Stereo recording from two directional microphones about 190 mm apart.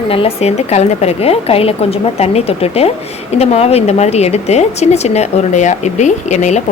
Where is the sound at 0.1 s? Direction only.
30° left (ahead or behind).